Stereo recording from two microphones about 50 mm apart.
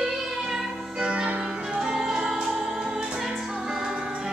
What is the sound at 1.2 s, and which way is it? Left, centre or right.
Music, right.